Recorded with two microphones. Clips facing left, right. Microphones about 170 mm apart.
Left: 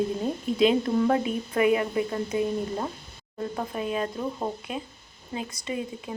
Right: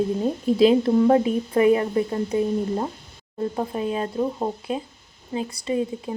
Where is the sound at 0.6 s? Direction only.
35° right (ahead or behind).